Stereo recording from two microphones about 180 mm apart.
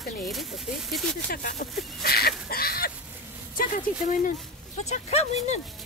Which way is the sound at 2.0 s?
60° left (ahead or behind).